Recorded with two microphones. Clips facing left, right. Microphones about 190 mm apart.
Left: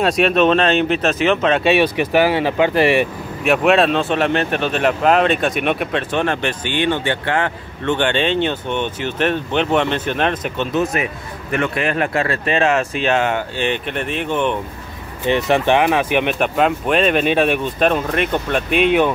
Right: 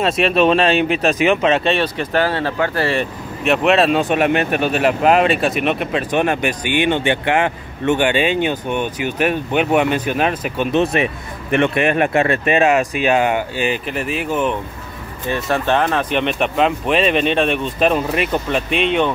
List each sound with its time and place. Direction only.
0.0 s speech: centre (ahead or behind)
1.6 s speech: 10° left (ahead or behind)
3.4 s speech: centre (ahead or behind)
6.1 s speech: 10° right (ahead or behind)
10.7 s speech: 25° right (ahead or behind); by 14.6 s 5° right (ahead or behind)
15.2 s speech: 20° left (ahead or behind)